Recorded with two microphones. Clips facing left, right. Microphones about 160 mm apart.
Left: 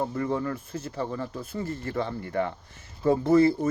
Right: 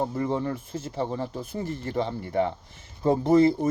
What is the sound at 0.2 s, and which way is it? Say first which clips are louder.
Speech: right 1 dB; 20° right (ahead or behind).